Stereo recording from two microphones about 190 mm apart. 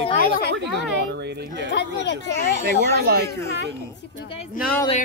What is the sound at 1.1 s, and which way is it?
Speech, 60° right (ahead or behind).